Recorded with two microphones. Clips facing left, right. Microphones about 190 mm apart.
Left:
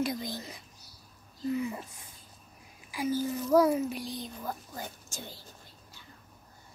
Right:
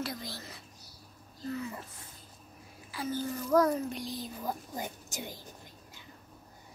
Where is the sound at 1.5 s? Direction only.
15° left (ahead or behind).